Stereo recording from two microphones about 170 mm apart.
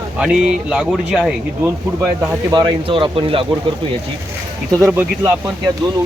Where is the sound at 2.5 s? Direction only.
30° right (ahead or behind).